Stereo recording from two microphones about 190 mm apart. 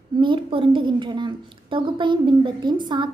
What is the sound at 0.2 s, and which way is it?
A woman's voice, 25° right (ahead or behind).